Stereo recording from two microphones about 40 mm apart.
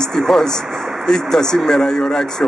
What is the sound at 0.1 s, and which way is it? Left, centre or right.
A man's voice, centre.